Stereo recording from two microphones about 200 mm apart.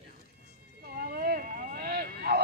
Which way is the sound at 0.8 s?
50° right (ahead or behind).